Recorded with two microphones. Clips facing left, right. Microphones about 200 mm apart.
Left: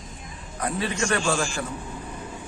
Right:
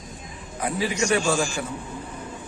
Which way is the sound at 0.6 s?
10° right (ahead or behind).